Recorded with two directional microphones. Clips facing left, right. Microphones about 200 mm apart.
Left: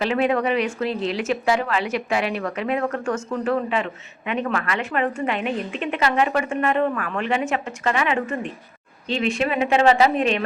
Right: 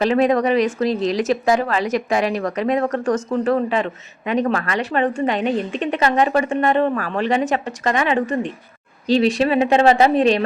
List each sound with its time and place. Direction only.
0.0 s a woman's voice: 40° right (ahead or behind)